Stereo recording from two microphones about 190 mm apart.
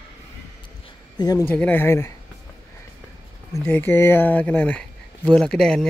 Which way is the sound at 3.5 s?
10° left (ahead or behind).